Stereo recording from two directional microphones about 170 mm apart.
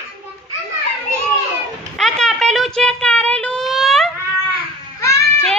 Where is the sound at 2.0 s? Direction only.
Centre (ahead or behind).